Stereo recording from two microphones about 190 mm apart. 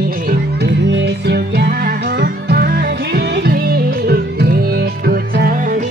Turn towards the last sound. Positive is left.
turn(degrees=-50)  # may be behind; listen again after turning